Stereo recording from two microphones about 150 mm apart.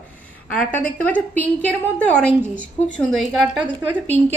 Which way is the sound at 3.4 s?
10° right (ahead or behind).